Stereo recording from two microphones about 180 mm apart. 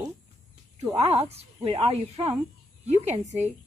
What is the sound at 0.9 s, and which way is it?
A woman's voice, 30° right (ahead or behind).